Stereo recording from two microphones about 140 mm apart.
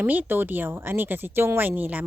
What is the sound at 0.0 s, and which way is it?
Speech, 10° right (ahead or behind).